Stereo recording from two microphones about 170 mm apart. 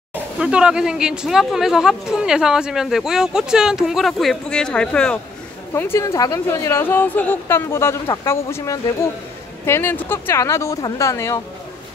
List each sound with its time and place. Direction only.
0.1 s a woman's voice: 5° right (ahead or behind); by 11.4 s 20° left (ahead or behind)